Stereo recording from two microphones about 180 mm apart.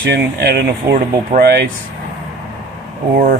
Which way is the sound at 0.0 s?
65° right (ahead or behind).